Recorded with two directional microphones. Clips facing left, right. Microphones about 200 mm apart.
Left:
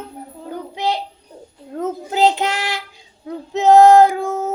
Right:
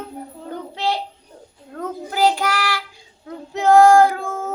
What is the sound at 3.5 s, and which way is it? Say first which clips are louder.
Female singing: left 3 dB; 20° left (ahead or behind).